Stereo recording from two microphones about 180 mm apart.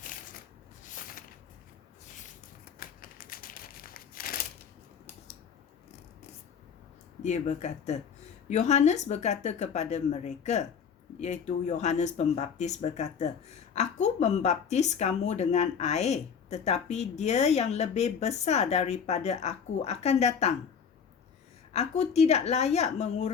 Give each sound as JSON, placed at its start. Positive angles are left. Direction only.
{"t": 2.7, "sound": "crumpling", "side_deg": 50}
{"t": 7.2, "sound": "speech", "side_deg": 40}
{"t": 21.7, "sound": "speech", "side_deg": 35}